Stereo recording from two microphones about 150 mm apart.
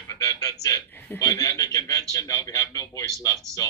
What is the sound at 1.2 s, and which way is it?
A man's voice, 25° left (ahead or behind).